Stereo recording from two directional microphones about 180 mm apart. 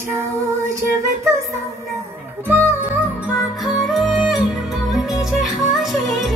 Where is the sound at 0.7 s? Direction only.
15° right (ahead or behind).